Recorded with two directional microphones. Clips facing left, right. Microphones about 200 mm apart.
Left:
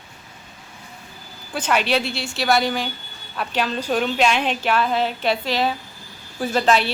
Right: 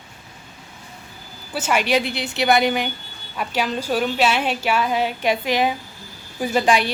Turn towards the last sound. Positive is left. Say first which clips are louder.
# even
turn(degrees=-15)  # may be behind; listen again after turning